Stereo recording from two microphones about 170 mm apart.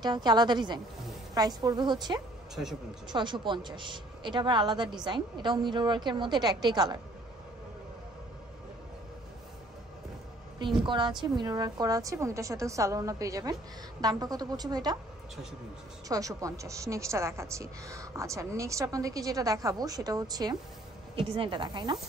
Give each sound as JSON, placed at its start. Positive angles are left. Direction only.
{"t": 0.0, "sound": "a woman's voice", "side_deg": -25}
{"t": 2.5, "sound": "speech", "side_deg": 0}
{"t": 3.1, "sound": "a woman's voice", "side_deg": -25}
{"t": 10.6, "sound": "a woman's voice", "side_deg": -30}
{"t": 16.1, "sound": "a woman's voice", "side_deg": -20}